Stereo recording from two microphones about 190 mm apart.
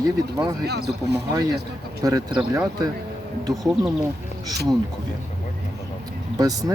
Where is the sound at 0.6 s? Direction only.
60° right (ahead or behind).